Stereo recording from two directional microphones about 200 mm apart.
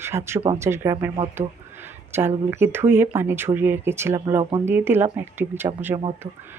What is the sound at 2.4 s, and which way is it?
Speech, 10° right (ahead or behind).